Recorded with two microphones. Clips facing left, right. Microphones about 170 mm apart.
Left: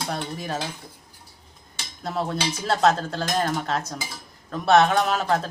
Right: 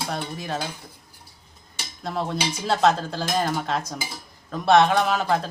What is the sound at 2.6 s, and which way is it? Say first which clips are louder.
Speech: even; centre (ahead or behind).